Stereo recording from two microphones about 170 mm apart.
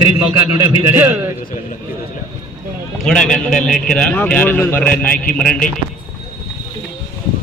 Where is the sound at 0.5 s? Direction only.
15° right (ahead or behind).